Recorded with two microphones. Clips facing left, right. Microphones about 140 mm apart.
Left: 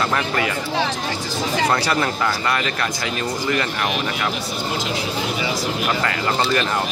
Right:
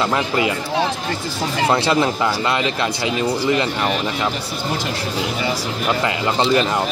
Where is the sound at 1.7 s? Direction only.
20° right (ahead or behind).